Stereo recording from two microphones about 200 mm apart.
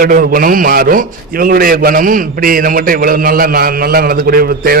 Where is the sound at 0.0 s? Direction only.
45° right (ahead or behind).